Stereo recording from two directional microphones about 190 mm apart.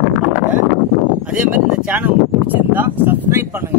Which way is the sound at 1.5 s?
5° right (ahead or behind).